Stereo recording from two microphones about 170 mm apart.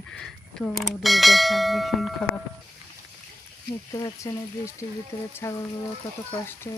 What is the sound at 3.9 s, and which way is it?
Speech, 20° left (ahead or behind).